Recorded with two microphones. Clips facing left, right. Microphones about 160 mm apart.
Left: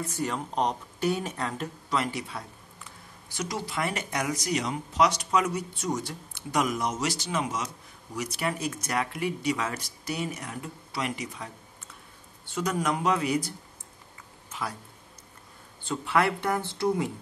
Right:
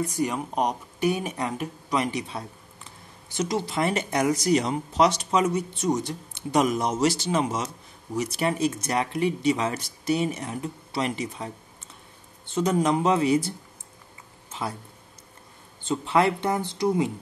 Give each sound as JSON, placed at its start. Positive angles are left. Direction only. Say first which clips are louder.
{"t": 0.0, "sound": "speech", "louder": "right 5 dB", "side_deg": -15}
{"t": 14.5, "sound": "a sound", "louder": "right 3 dB", "side_deg": -25}
{"t": 15.8, "sound": "speech", "louder": "right 4 dB", "side_deg": -25}